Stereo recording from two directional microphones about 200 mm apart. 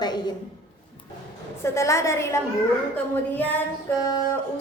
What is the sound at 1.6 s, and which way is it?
A woman's voice, 15° left (ahead or behind).